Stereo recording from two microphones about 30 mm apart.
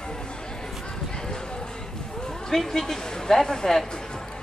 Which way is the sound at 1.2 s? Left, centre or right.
Left.